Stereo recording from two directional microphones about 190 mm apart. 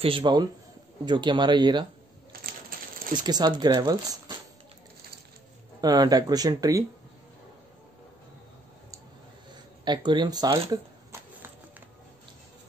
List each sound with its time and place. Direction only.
0.0 s speech: 25° right (ahead or behind)
2.3 s a sound: 50° right (ahead or behind)
3.0 s coin: 45° right (ahead or behind)
3.3 s speech: 20° right (ahead or behind)
5.8 s speech: 20° right (ahead or behind)
9.8 s speech: 25° right (ahead or behind)